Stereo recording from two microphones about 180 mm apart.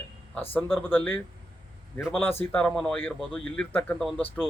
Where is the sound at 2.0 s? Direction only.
5° right (ahead or behind).